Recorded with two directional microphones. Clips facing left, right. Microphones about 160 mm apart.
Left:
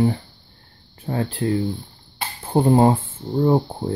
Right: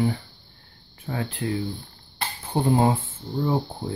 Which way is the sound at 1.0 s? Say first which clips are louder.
Left 6 dB; 35° left (ahead or behind).